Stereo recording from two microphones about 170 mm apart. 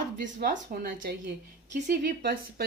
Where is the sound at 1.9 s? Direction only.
65° right (ahead or behind).